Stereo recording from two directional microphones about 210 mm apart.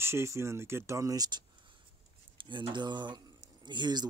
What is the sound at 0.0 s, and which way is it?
Speech, 10° right (ahead or behind).